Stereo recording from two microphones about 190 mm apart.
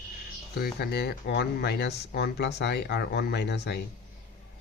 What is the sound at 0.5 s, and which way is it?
Speech, 55° left (ahead or behind).